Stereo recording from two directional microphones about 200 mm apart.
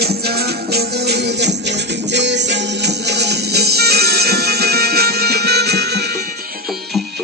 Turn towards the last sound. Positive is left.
turn(degrees=-55)  # may be behind; listen again after turning